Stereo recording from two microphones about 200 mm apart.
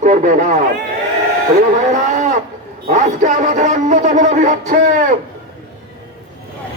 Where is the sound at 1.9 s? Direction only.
40° right (ahead or behind).